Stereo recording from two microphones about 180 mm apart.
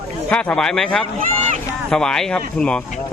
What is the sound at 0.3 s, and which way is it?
Speech, 5° left (ahead or behind).